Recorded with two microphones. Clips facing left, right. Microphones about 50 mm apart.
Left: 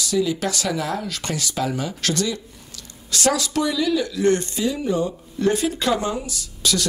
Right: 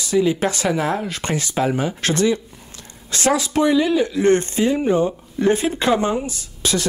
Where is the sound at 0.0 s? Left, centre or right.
Right.